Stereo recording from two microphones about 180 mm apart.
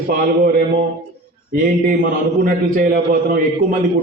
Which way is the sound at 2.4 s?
50° right (ahead or behind).